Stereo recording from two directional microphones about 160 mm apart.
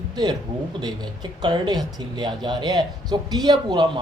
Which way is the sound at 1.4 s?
25° right (ahead or behind).